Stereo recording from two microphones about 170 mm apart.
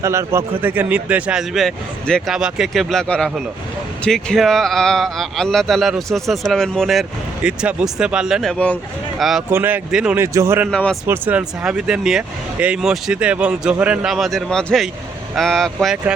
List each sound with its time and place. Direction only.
0.0 s speech: 15° right (ahead or behind); by 9.4 s centre (ahead or behind)
9.5 s speech: 10° right (ahead or behind)
10.3 s speech: 15° right (ahead or behind)
10.7 s speech: 5° left (ahead or behind)
11.0 s speech: 10° right (ahead or behind)